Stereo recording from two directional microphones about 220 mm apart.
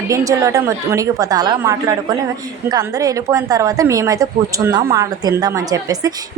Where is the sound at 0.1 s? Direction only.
15° right (ahead or behind).